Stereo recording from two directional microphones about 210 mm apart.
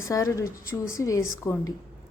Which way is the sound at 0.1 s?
15° left (ahead or behind).